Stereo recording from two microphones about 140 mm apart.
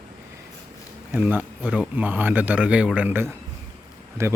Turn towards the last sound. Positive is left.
turn(degrees=-20)  # may be behind; listen again after turning